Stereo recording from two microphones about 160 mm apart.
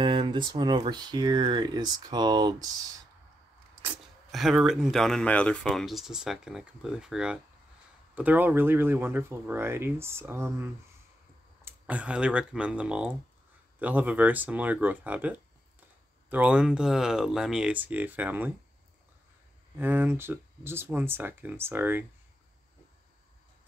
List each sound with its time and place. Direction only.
0.0 s speech: 30° right (ahead or behind)
3.9 s speech: centre (ahead or behind)
19.8 s speech: 10° right (ahead or behind)